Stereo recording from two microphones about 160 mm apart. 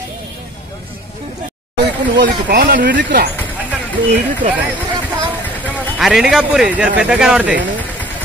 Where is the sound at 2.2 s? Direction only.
70° right (ahead or behind).